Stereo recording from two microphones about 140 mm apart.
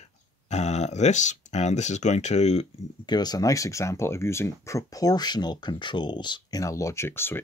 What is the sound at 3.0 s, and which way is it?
Speech, 30° left (ahead or behind).